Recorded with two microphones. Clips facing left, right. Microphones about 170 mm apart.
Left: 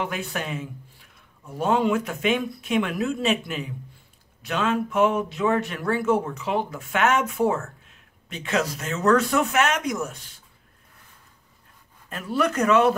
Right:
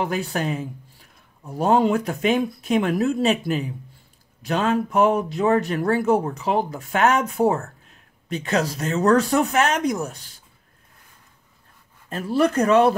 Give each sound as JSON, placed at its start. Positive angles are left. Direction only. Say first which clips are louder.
{"t": 0.0, "sound": "speech", "louder": "right 5 dB", "side_deg": -35}
{"t": 12.1, "sound": "speech", "louder": "right 4 dB", "side_deg": -30}